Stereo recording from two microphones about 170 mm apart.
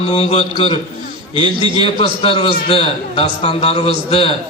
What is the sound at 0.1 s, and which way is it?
A man's voice, 35° left (ahead or behind).